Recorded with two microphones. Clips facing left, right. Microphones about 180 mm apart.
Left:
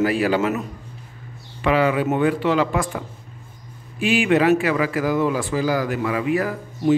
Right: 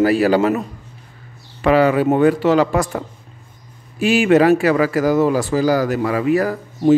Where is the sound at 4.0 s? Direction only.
40° right (ahead or behind).